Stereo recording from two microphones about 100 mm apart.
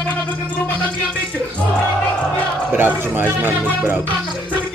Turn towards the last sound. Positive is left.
turn(degrees=-20)  # may be behind; listen again after turning